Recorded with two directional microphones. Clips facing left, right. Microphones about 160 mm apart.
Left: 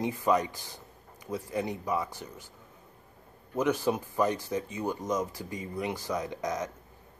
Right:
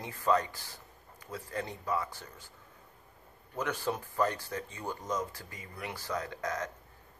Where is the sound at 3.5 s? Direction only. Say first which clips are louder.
Left 7 dB; 15° left (ahead or behind).